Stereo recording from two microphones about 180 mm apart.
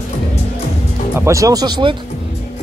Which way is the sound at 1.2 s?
15° right (ahead or behind).